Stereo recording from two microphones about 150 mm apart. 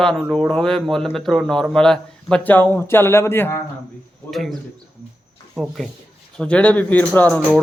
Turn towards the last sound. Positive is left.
turn(degrees=10)  # may be behind; listen again after turning